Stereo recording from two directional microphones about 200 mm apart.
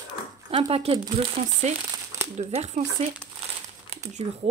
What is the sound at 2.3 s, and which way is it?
Speech, 35° right (ahead or behind).